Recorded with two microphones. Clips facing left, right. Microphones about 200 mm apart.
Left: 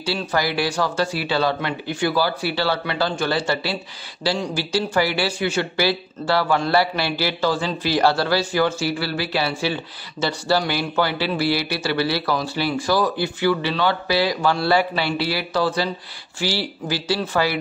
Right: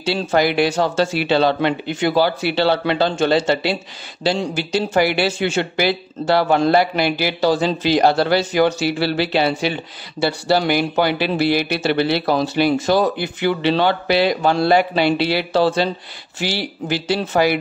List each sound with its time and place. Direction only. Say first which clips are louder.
0.0 s speech: right 5 dB; 20° right (ahead or behind)